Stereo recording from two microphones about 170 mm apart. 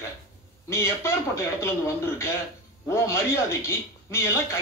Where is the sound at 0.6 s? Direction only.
15° left (ahead or behind).